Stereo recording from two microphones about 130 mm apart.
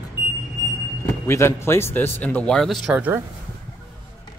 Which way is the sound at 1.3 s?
20° left (ahead or behind).